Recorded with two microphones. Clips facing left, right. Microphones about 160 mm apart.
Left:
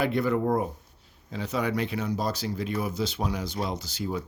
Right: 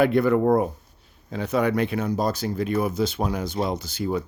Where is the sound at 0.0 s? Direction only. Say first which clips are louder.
Right 6 dB; 55° right (ahead or behind).